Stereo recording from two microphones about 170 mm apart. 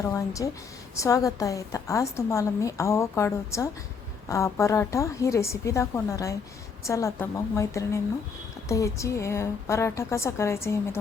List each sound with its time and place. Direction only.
0.0 s a woman's voice: 20° left (ahead or behind)